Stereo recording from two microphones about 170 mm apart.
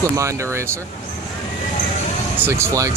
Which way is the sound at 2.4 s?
15° right (ahead or behind).